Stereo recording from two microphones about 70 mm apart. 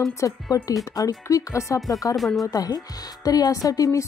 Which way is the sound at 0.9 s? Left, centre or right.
Left.